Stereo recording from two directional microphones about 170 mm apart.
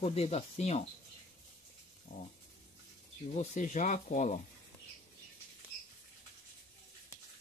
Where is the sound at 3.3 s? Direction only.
45° left (ahead or behind).